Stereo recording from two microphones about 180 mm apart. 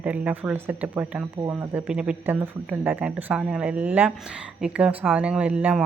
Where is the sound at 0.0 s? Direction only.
10° right (ahead or behind).